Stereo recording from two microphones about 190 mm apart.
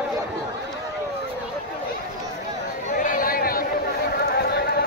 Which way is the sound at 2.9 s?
45° left (ahead or behind).